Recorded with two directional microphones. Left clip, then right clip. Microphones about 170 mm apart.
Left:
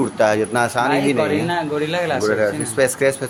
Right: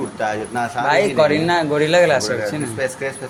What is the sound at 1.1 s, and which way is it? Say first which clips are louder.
A man's voice: right 4 dB; 30° right (ahead or behind).